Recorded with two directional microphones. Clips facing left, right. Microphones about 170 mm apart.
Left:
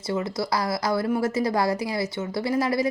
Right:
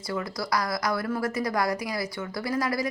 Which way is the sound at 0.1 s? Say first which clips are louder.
Left 3 dB; 25° left (ahead or behind).